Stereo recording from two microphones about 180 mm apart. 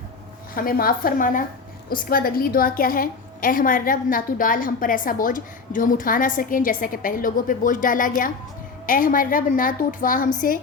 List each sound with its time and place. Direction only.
0.5 s a woman's voice: 55° left (ahead or behind)